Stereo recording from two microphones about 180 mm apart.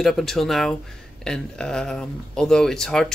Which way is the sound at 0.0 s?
Centre (ahead or behind).